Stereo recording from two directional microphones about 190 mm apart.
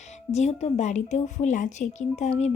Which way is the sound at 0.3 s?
35° left (ahead or behind).